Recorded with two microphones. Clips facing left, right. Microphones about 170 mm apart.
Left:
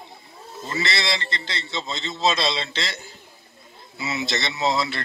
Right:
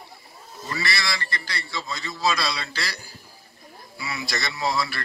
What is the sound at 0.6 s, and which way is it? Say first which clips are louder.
A man's voice: left 3 dB; 20° left (ahead or behind).